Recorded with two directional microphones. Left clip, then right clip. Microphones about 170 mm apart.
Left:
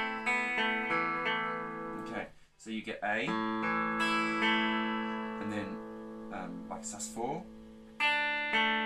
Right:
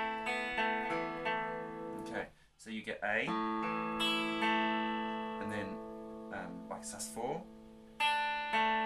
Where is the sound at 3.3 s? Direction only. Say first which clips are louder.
Left 3 dB; 50° right (ahead or behind).